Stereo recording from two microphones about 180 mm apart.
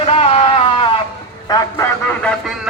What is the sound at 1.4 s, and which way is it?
Speech, 20° left (ahead or behind).